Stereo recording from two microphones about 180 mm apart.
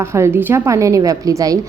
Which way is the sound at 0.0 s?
15° right (ahead or behind).